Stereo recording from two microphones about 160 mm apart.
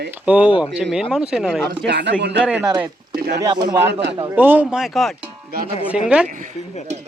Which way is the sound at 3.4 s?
25° right (ahead or behind).